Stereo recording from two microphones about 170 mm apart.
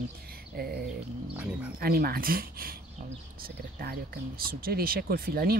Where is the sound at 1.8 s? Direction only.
60° right (ahead or behind).